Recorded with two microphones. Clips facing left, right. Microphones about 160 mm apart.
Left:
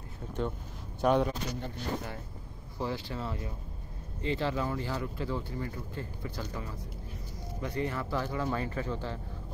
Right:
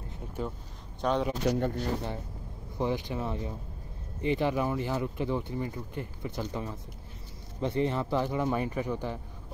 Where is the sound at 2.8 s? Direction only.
15° right (ahead or behind).